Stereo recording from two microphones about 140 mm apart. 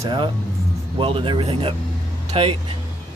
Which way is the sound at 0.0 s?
35° right (ahead or behind).